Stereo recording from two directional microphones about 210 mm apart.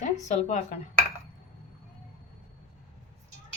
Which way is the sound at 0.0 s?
35° left (ahead or behind).